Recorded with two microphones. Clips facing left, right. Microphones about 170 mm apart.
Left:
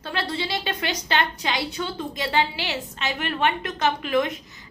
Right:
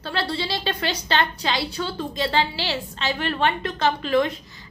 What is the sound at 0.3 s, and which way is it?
A woman's voice, 15° left (ahead or behind).